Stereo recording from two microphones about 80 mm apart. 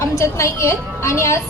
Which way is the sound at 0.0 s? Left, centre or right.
Left.